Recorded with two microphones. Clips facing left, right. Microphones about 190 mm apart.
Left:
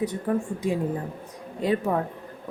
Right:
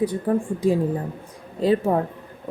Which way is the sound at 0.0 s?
30° right (ahead or behind).